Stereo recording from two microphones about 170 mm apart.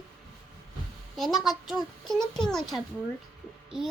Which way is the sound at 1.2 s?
Centre (ahead or behind).